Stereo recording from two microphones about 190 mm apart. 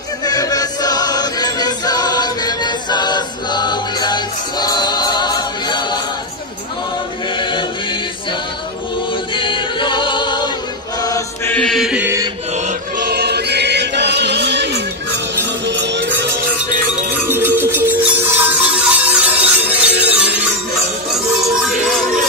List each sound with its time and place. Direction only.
0.2 s choir: 20° left (ahead or behind)
9.3 s choir: 25° left (ahead or behind)
11.0 s chant: 20° left (ahead or behind)
11.5 s mantra: centre (ahead or behind)
13.0 s music: 60° right (ahead or behind)
17.1 s music: 10° right (ahead or behind)